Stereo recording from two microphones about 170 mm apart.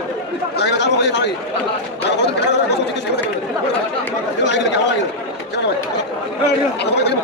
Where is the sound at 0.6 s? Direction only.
85° left.